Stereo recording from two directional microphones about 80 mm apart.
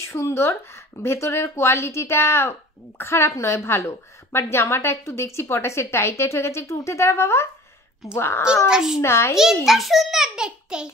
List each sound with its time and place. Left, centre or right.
0.0 s a woman's voice: left
8.6 s a child's voice: centre
9.0 s a woman's voice: left
9.7 s a child's voice: centre